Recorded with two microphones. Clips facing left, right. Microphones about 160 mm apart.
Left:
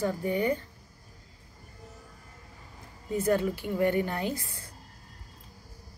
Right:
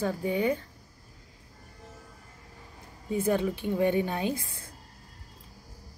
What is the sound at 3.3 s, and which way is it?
A woman's voice, 20° right (ahead or behind).